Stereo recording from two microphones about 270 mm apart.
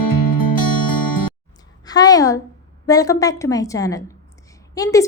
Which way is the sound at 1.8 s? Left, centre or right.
Centre.